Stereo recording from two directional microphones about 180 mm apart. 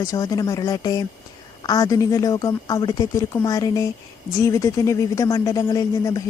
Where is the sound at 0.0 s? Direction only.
20° left (ahead or behind).